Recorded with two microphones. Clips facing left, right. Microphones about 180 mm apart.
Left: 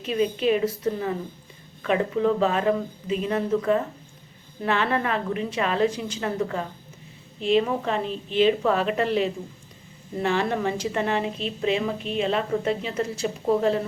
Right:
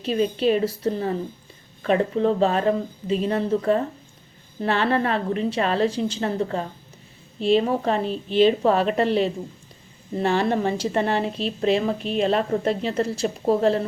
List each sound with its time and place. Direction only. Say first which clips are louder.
0.0 s a woman's voice: right 2 dB; 35° right (ahead or behind)
10.2 s a woman's voice: right 3 dB; 30° right (ahead or behind)